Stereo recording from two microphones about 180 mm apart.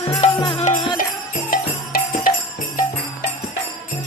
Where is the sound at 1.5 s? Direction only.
50° left (ahead or behind).